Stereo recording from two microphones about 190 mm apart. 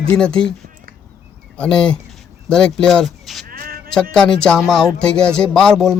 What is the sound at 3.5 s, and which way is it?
Bleat, 50° right (ahead or behind).